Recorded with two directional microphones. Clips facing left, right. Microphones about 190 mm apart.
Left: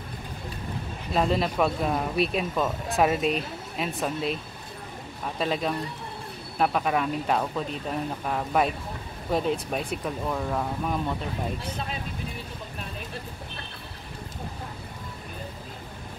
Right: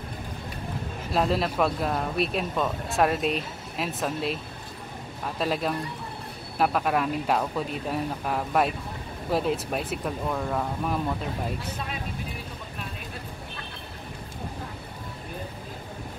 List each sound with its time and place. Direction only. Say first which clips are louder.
1.1 s speech: even; centre (ahead or behind)
5.4 s speech: even; centre (ahead or behind)